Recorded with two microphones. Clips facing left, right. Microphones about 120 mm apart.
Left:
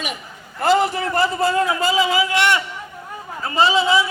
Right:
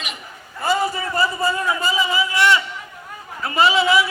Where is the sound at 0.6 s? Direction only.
80° left; by 2.6 s 65° left (ahead or behind).